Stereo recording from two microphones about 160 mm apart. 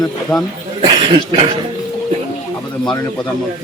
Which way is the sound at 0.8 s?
30° right (ahead or behind).